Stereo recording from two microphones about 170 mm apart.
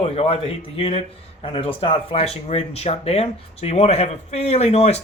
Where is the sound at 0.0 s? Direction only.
35° left (ahead or behind).